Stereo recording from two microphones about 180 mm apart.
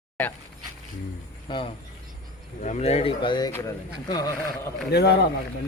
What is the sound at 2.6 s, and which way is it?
A man's voice, 40° left (ahead or behind).